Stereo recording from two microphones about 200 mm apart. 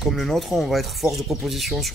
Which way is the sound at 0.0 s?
Centre (ahead or behind).